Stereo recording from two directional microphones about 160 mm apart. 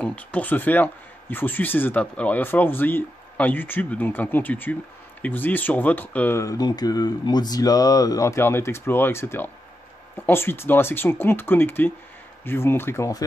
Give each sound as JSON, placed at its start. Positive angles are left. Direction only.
{"t": 0.0, "sound": "speech", "side_deg": 10}